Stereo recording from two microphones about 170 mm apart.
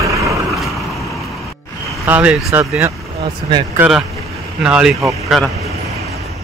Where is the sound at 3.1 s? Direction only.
35° right (ahead or behind).